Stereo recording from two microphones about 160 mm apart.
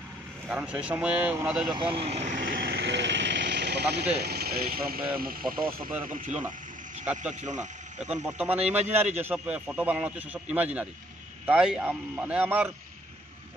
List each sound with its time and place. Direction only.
0.5 s a man's voice: 10° right (ahead or behind)
1.7 s vehicle: 30° right (ahead or behind); by 4.0 s 90° right
4.2 s speech: 80° right
6.0 s speech: 55° right (ahead or behind)
8.1 s a man's voice: 5° right (ahead or behind)